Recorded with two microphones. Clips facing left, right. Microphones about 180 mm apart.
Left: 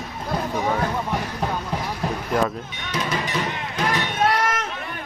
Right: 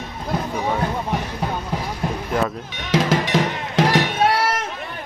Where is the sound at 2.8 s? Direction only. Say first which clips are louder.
Right 7 dB; 90° right.